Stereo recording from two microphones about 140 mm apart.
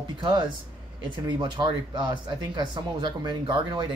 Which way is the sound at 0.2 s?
35° right (ahead or behind).